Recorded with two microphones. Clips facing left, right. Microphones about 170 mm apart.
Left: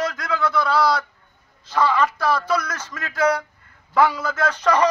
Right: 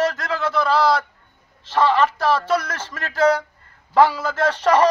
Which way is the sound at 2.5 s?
30° right (ahead or behind).